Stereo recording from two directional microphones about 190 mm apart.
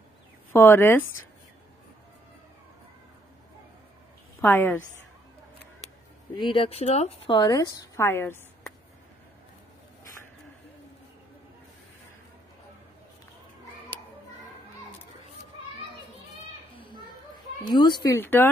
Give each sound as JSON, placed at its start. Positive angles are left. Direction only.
{"t": 0.5, "sound": "speech", "side_deg": 10}
{"t": 4.4, "sound": "a woman's voice", "side_deg": 10}
{"t": 6.3, "sound": "a woman's voice", "side_deg": 25}
{"t": 17.6, "sound": "speech", "side_deg": 25}